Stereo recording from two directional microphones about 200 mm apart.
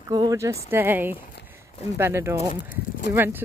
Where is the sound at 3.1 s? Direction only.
10° right (ahead or behind).